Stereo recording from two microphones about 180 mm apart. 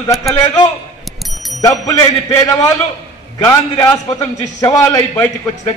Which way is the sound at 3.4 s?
15° left (ahead or behind).